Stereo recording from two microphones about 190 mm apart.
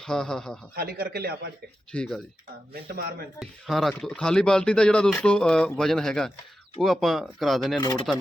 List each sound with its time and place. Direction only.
0.0 s speech: 5° left (ahead or behind)
0.8 s speech: 55° right (ahead or behind)
1.9 s speech: 5° left (ahead or behind)
2.7 s speech: 55° right (ahead or behind)
3.4 s speech: centre (ahead or behind)
7.8 s speech: 20° left (ahead or behind)